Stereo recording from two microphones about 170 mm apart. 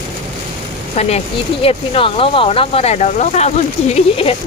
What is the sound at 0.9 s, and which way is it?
Speech, 40° left (ahead or behind).